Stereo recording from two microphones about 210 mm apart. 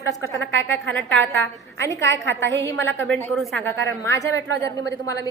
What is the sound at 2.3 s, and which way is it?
Speech, 60° right (ahead or behind).